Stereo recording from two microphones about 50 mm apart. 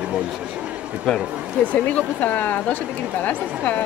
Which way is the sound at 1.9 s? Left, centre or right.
Left.